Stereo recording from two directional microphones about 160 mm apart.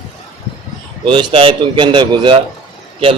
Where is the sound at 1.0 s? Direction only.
30° right (ahead or behind).